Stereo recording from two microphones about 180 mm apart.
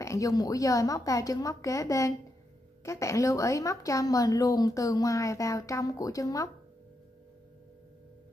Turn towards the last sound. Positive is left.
turn(degrees=20)  # may be behind; listen again after turning